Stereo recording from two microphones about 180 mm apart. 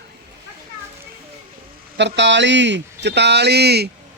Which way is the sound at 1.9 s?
80° right.